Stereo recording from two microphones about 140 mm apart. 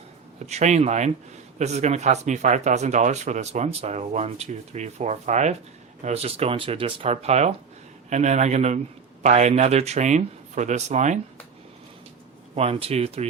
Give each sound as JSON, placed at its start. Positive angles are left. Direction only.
{"t": 0.3, "sound": "speech", "side_deg": -55}
{"t": 12.5, "sound": "speech", "side_deg": -45}